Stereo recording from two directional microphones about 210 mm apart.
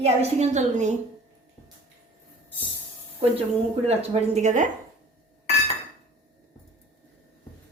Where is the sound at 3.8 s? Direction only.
30° right (ahead or behind).